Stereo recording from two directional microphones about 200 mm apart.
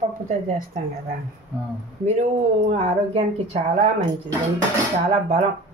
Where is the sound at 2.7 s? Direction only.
35° right (ahead or behind).